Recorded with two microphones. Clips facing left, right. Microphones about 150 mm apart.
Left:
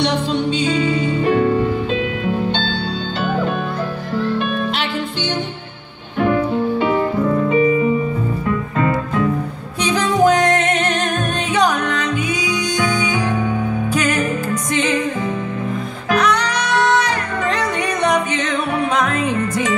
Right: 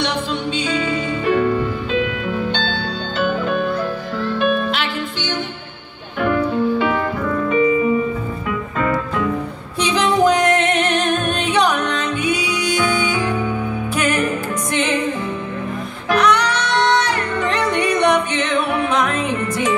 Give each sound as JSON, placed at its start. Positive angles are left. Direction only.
{"t": 0.7, "sound": "music", "side_deg": 30}
{"t": 6.1, "sound": "music", "side_deg": 30}
{"t": 9.8, "sound": "music", "side_deg": 45}